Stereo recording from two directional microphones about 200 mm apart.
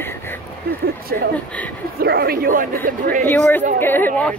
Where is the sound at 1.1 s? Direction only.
50° right (ahead or behind).